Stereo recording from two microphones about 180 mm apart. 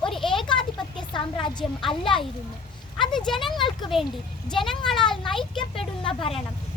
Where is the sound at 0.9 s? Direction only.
25° left (ahead or behind).